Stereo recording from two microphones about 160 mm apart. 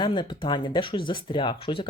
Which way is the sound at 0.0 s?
30° left (ahead or behind).